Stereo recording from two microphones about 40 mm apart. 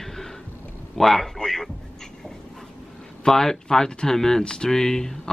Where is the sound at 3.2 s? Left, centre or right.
Centre.